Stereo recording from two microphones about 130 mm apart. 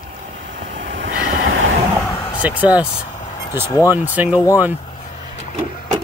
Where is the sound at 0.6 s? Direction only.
85° right.